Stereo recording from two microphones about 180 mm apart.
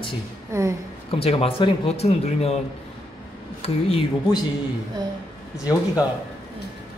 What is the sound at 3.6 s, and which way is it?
Speech, 30° left (ahead or behind).